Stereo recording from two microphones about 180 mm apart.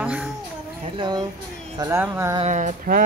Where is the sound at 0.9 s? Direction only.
25° right (ahead or behind).